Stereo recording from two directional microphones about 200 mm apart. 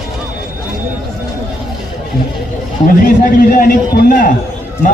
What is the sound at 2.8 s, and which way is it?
A man's voice, 45° left (ahead or behind).